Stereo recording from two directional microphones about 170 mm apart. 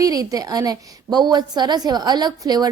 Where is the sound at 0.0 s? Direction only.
20° right (ahead or behind).